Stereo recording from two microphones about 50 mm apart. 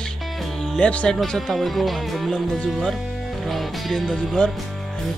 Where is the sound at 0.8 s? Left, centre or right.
Left.